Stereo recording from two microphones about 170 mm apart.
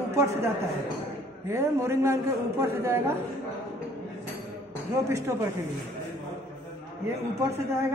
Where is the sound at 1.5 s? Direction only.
15° right (ahead or behind).